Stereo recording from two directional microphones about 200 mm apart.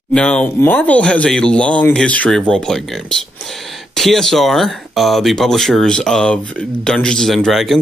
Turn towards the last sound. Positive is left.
turn(degrees=0)  # may be behind; listen again after turning